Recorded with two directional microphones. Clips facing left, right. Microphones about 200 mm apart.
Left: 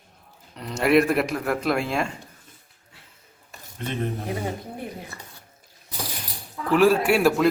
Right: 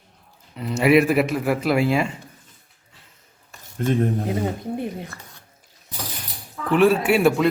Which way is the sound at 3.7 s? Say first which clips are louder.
Right 8 dB; 45° right (ahead or behind).